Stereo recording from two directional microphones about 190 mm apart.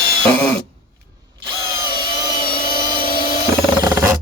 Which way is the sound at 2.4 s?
50° left (ahead or behind).